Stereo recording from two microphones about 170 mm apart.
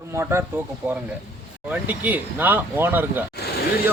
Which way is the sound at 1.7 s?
10° right (ahead or behind).